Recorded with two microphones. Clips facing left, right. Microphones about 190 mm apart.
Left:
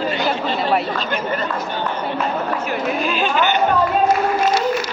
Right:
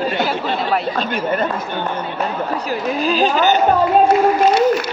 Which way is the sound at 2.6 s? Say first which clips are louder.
Right 2 dB; 35° right (ahead or behind).